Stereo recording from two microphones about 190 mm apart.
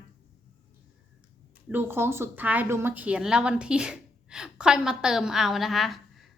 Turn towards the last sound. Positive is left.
turn(degrees=0)  # may be behind; listen again after turning